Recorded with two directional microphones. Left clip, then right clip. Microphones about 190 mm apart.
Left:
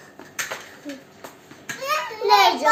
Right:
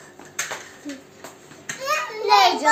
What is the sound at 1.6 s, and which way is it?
Children playing, 5° left (ahead or behind).